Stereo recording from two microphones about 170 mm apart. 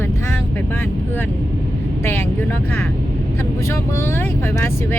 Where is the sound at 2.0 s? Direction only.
15° left (ahead or behind).